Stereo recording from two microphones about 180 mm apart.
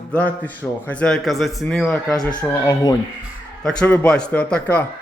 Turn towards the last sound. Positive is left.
turn(degrees=10)  # may be behind; listen again after turning